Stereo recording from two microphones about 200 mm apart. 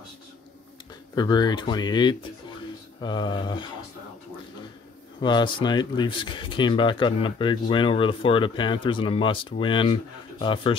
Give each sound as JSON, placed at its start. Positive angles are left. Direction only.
{"t": 1.1, "sound": "speech", "side_deg": 20}
{"t": 5.2, "sound": "speech", "side_deg": 25}